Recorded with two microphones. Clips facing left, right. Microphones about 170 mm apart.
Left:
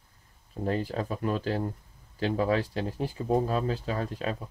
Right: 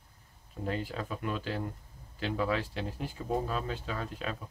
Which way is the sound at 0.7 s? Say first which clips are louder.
Left 5 dB; 40° left (ahead or behind).